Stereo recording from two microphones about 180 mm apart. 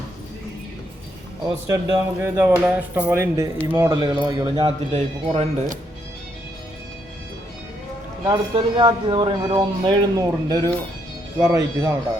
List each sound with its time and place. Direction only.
1.5 s speech: 20° right (ahead or behind); by 5.7 s 35° right (ahead or behind)
8.3 s speech: 25° right (ahead or behind)